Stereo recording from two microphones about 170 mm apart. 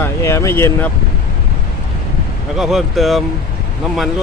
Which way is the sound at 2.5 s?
Centre (ahead or behind).